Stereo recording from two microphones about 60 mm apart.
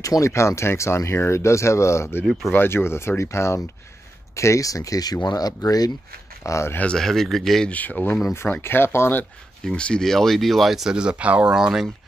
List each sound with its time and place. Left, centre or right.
0.0 s speech: left
4.4 s speech: left
6.4 s speech: left
7.0 s speech: centre
7.7 s speech: left
9.8 s speech: centre
10.9 s speech: centre
11.5 s speech: centre